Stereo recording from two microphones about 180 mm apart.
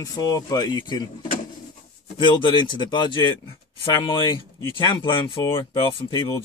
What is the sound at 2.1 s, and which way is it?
Speech, 30° left (ahead or behind).